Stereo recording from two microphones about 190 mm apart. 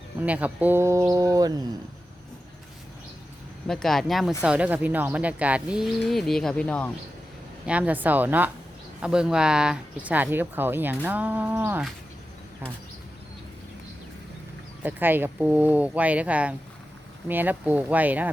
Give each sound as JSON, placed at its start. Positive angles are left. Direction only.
{"t": 0.2, "sound": "speech", "side_deg": -10}
{"t": 3.7, "sound": "speech", "side_deg": 0}
{"t": 7.7, "sound": "speech", "side_deg": -10}
{"t": 14.8, "sound": "speech", "side_deg": -10}